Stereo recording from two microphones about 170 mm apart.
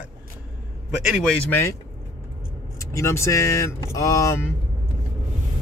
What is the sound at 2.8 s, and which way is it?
Speech, 15° left (ahead or behind).